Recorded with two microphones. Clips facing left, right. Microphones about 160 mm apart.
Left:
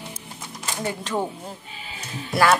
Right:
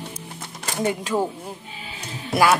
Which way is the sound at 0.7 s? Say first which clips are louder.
Right 6 dB; 15° right (ahead or behind).